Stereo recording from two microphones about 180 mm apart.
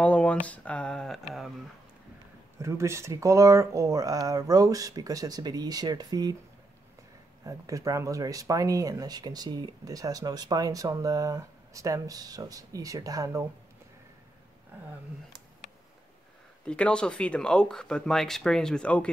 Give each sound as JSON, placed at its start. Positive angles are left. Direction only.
{"t": 0.0, "sound": "speech", "side_deg": 5}
{"t": 2.6, "sound": "speech", "side_deg": -15}
{"t": 7.4, "sound": "speech", "side_deg": -20}
{"t": 16.6, "sound": "speech", "side_deg": 5}